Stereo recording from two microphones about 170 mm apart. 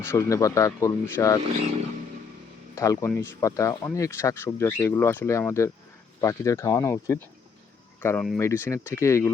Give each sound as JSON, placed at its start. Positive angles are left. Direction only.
{"t": 0.0, "sound": "speech", "side_deg": 15}
{"t": 2.7, "sound": "speech", "side_deg": 20}